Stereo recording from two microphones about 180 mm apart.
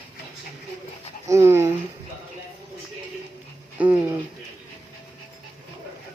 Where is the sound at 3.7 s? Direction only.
10° right (ahead or behind).